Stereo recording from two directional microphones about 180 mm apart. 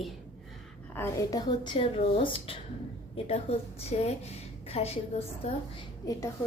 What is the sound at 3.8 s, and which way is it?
A woman's voice, 35° left (ahead or behind).